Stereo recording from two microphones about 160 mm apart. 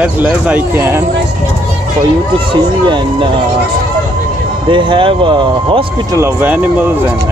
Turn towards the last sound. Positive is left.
turn(degrees=-15)  # may be behind; listen again after turning